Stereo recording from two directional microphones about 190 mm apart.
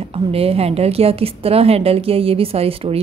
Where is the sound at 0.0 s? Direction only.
30° right (ahead or behind).